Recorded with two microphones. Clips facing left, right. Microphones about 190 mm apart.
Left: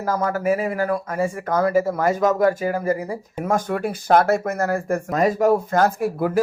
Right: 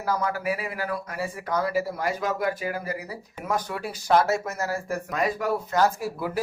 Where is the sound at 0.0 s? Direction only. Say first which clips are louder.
Left 5 dB; 45° left (ahead or behind).